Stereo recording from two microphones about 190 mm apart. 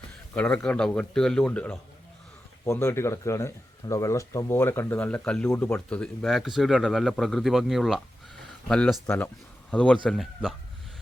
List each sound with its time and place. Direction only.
0.3 s speech: 5° left (ahead or behind)